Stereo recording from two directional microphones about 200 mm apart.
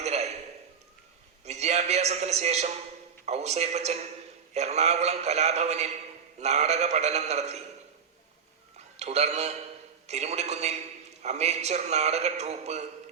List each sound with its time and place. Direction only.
0.0 s a sound: 35° right (ahead or behind)
1.5 s a man's voice: 35° right (ahead or behind)
9.0 s a man's voice: 35° right (ahead or behind)